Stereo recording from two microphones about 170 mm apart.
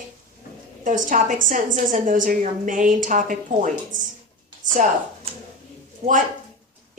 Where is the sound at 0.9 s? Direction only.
50° right (ahead or behind).